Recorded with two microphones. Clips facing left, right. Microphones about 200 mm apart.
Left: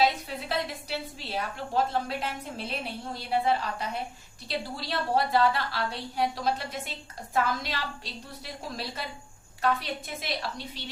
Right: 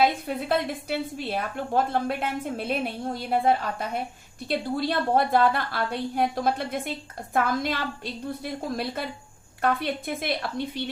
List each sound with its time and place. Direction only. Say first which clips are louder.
0.3 s a woman's voice: right 6 dB; 50° right (ahead or behind)